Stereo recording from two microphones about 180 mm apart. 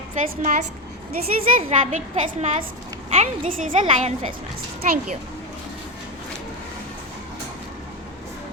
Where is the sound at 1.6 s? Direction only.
35° right (ahead or behind).